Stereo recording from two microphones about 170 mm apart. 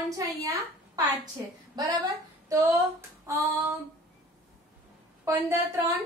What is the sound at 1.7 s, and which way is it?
A woman's voice, 25° right (ahead or behind).